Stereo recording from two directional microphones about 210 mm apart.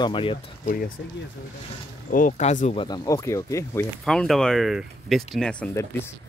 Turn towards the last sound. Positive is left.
turn(degrees=10)  # may be behind; listen again after turning